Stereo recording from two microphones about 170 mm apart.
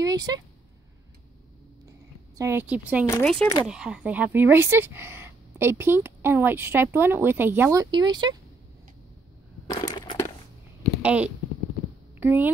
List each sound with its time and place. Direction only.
0.0 s a sound: 20° right (ahead or behind)
2.3 s speech: 15° right (ahead or behind)
9.7 s crushing: 25° left (ahead or behind)
11.0 s speech: 10° right (ahead or behind)